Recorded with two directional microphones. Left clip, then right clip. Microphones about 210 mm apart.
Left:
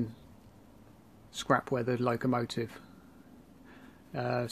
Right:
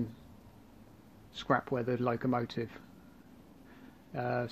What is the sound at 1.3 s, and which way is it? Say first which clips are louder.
Speech: left 2 dB; 15° left (ahead or behind).